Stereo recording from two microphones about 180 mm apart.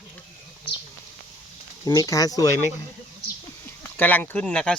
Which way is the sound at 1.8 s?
20° left (ahead or behind).